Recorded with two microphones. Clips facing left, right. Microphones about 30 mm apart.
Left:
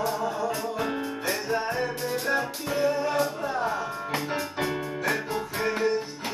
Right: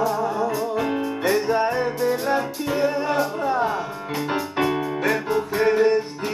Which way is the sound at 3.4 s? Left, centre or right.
Right.